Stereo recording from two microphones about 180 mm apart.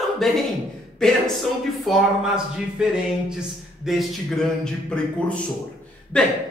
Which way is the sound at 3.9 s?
Centre (ahead or behind).